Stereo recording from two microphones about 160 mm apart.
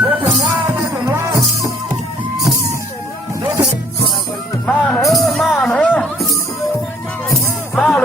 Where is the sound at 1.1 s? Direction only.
20° right (ahead or behind).